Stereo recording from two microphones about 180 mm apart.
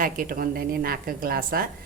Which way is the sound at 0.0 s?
50° right (ahead or behind).